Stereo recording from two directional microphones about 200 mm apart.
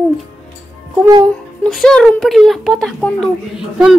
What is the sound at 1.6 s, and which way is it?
Speech, 5° left (ahead or behind).